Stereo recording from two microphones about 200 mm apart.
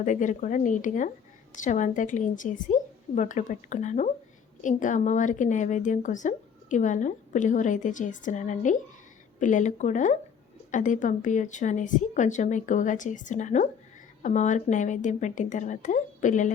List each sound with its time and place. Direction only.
0.0 s a woman's voice: 40° left (ahead or behind)